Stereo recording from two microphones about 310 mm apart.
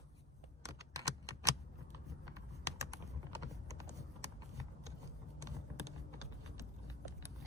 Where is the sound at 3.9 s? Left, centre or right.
Centre.